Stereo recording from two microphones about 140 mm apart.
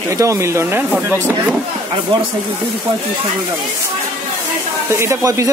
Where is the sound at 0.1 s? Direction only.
20° right (ahead or behind).